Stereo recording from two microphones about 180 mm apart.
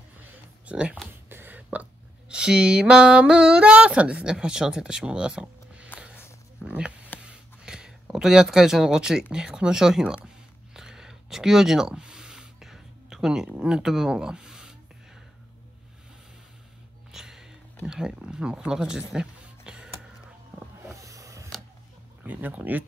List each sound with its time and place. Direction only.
0.2 s speech: 10° right (ahead or behind)
6.6 s a sound: 5° right (ahead or behind)
17.1 s music: 5° right (ahead or behind)
17.8 s speech: 5° right (ahead or behind)
19.1 s music: 5° right (ahead or behind)
20.5 s a sound: 15° right (ahead or behind)
22.2 s speech: 10° right (ahead or behind)